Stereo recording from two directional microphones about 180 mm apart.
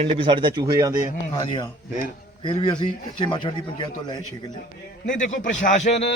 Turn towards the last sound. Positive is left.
turn(degrees=35)  # may be behind; listen again after turning